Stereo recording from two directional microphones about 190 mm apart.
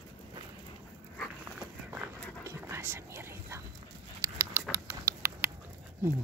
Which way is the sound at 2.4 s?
15° right (ahead or behind).